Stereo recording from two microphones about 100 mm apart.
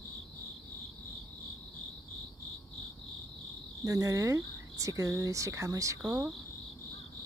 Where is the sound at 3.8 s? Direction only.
35° right (ahead or behind).